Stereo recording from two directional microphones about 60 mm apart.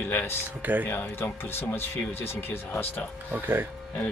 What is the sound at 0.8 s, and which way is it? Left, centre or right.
Speech, left.